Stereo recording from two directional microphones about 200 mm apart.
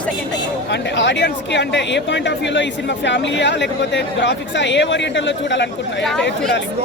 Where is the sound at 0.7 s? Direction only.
60° left (ahead or behind).